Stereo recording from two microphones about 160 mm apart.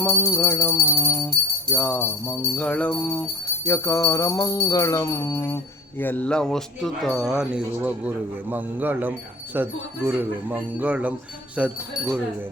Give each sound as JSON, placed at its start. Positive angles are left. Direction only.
{"t": 0.0, "sound": "music", "side_deg": 10}
{"t": 1.7, "sound": "jingle bell", "side_deg": 15}
{"t": 3.7, "sound": "music", "side_deg": 20}
{"t": 6.0, "sound": "speech", "side_deg": 10}